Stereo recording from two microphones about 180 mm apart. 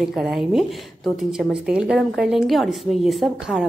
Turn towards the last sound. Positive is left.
turn(degrees=0)  # may be behind; listen again after turning